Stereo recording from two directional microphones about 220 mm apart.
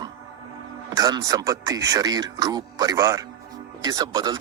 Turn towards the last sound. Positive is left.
turn(degrees=-20)  # may be behind; listen again after turning